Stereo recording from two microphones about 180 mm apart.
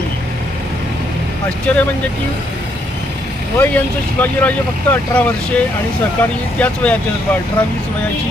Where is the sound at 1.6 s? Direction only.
10° left (ahead or behind).